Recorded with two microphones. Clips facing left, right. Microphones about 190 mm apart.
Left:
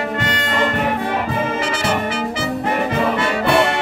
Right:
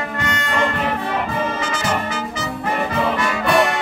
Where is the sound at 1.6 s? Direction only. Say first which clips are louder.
Left 2 dB; 30° left (ahead or behind).